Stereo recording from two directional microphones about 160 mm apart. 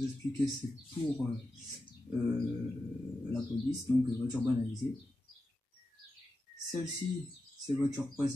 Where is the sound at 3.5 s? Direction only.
20° left (ahead or behind).